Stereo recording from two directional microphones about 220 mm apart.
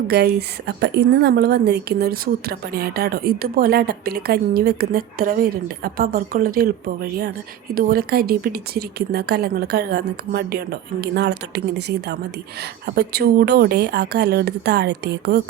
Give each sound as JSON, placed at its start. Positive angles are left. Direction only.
{"t": 0.1, "sound": "a woman's voice", "side_deg": -50}